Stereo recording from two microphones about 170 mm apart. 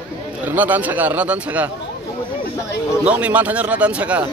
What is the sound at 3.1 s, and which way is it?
A man's voice, 5° right (ahead or behind).